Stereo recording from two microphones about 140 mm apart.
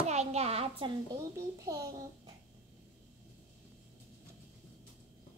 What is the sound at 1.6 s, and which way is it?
Speech, 25° right (ahead or behind).